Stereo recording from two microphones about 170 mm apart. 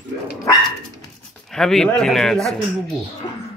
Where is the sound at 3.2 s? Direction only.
25° left (ahead or behind).